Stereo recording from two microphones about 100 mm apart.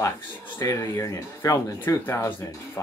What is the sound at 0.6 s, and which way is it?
Speech, 30° left (ahead or behind).